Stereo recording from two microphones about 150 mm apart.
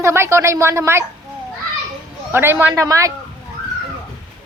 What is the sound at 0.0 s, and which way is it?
A woman's voice, 15° right (ahead or behind).